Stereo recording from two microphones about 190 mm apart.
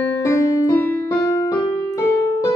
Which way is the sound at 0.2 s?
15° left (ahead or behind).